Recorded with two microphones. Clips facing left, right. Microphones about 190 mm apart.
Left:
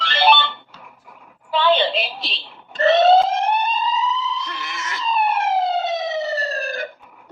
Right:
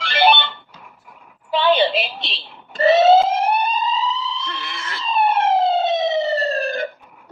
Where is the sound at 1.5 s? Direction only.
15° right (ahead or behind).